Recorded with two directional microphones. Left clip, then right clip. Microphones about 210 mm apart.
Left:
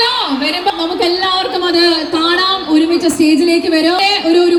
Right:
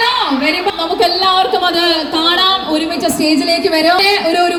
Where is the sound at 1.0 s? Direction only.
50° right (ahead or behind).